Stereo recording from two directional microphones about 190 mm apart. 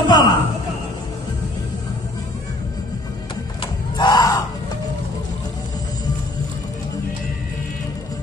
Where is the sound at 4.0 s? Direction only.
20° left (ahead or behind).